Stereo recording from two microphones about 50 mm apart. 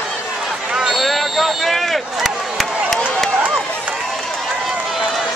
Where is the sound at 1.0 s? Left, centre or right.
Centre.